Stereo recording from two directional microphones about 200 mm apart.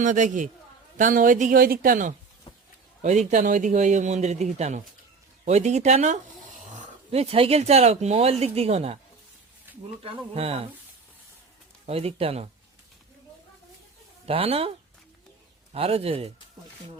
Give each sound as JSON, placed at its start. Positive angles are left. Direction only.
{"t": 0.0, "sound": "a man's voice", "side_deg": -40}
{"t": 9.7, "sound": "a sound", "side_deg": -10}
{"t": 10.0, "sound": "speech", "side_deg": -30}
{"t": 11.9, "sound": "speech", "side_deg": -30}
{"t": 14.3, "sound": "speech", "side_deg": -30}